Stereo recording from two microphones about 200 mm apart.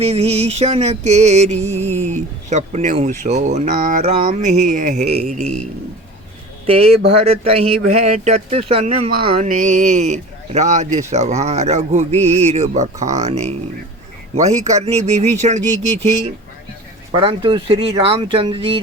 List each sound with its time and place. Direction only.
0.0 s speech: 30° right (ahead or behind)
1.7 s a sound: 10° left (ahead or behind)
2.5 s speech: 35° right (ahead or behind)
6.7 s speech: 30° right (ahead or behind)
17.1 s speech: 25° right (ahead or behind)